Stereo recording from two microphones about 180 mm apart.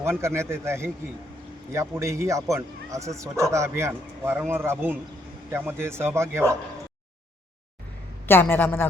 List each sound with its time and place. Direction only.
0.0 s speech: 15° right (ahead or behind)
8.3 s a man's voice: 10° left (ahead or behind)